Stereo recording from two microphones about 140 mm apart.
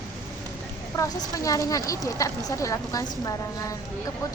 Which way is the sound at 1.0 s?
25° left (ahead or behind).